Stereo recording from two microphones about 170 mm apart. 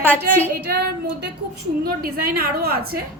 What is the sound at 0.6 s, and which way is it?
Speech, 70° right (ahead or behind).